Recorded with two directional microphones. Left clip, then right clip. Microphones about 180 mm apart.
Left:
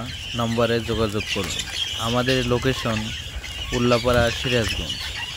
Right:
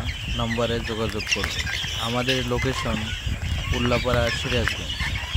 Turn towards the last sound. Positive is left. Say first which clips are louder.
# left 3 dB
turn(degrees=20)  # may be behind; listen again after turning